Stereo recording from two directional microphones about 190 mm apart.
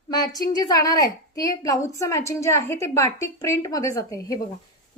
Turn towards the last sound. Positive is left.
turn(degrees=20)  # may be behind; listen again after turning